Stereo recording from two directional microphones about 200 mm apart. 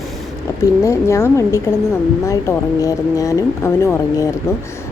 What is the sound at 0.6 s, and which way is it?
Speech, 15° left (ahead or behind).